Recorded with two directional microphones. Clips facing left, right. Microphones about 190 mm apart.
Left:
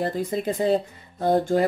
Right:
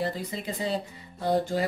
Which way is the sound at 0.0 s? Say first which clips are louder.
Left 6 dB; 50° left (ahead or behind).